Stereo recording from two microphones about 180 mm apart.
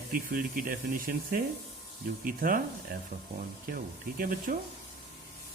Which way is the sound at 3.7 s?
55° right (ahead or behind).